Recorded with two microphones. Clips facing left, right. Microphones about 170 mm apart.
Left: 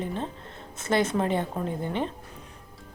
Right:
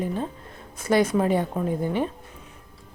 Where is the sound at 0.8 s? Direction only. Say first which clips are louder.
Right 4 dB; 25° left (ahead or behind).